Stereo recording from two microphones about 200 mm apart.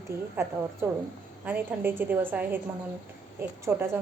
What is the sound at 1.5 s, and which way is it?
A woman's voice, 10° right (ahead or behind).